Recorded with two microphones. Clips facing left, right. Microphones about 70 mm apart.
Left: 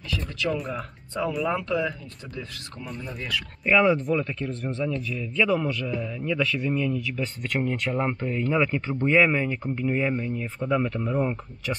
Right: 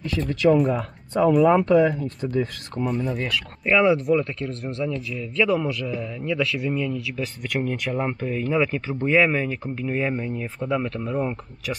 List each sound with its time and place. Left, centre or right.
0.1 s speech: right
3.6 s speech: centre
10.1 s speech: centre